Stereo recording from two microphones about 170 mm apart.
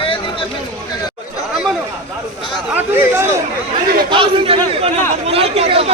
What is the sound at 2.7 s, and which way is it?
Speech, 15° right (ahead or behind).